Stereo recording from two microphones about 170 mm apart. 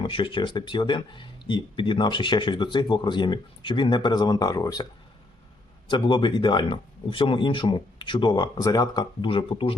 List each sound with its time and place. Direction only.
0.0 s speech: 30° left (ahead or behind)
5.9 s speech: 30° left (ahead or behind)